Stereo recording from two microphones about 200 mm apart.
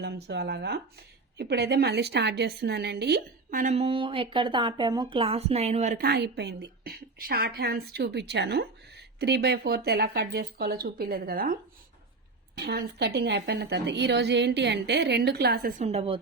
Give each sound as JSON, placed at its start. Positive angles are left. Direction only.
{"t": 0.0, "sound": "speech", "side_deg": -55}
{"t": 6.0, "sound": "speech", "side_deg": -55}
{"t": 12.5, "sound": "a woman's voice", "side_deg": -55}
{"t": 15.8, "sound": "a woman's voice", "side_deg": -30}